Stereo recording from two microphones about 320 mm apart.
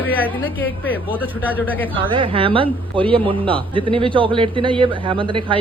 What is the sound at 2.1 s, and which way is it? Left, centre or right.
A man's voice, centre.